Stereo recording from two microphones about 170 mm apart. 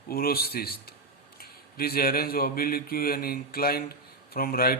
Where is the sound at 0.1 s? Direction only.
60° left (ahead or behind).